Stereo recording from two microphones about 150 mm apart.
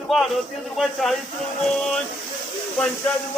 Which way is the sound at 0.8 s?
Centre (ahead or behind).